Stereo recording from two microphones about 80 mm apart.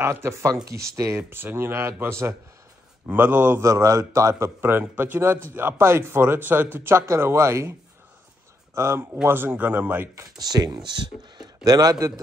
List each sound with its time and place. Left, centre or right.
0.0 s a man's voice: right
3.6 s a man's voice: right
8.7 s a man's voice: right
10.1 s speech: right